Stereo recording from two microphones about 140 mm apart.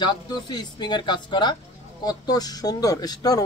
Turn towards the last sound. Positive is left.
turn(degrees=25)  # may be behind; listen again after turning